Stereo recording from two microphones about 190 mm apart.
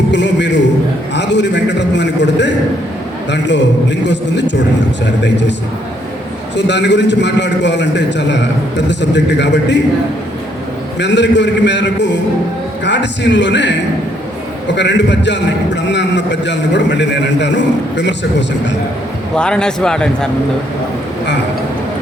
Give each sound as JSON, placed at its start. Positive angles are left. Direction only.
{"t": 0.1, "sound": "a man's voice", "side_deg": 65}
{"t": 1.1, "sound": "a sound", "side_deg": 65}
{"t": 3.3, "sound": "a man's voice", "side_deg": 65}
{"t": 6.6, "sound": "a man's voice", "side_deg": 65}
{"t": 11.0, "sound": "a man's voice", "side_deg": 65}
{"t": 19.4, "sound": "speech", "side_deg": 5}